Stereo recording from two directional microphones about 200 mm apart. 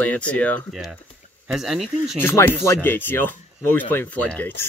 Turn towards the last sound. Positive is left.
turn(degrees=10)  # may be behind; listen again after turning